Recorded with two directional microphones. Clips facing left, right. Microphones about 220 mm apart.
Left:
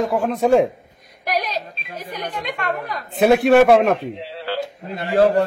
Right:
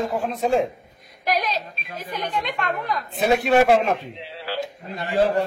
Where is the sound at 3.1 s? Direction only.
55° left (ahead or behind).